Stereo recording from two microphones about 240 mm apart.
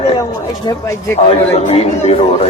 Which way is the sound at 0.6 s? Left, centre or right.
Centre.